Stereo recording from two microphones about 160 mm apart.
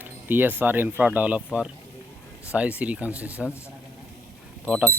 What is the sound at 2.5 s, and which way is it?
Speech, 10° right (ahead or behind).